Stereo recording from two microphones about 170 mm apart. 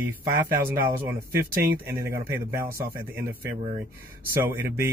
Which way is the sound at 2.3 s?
15° right (ahead or behind).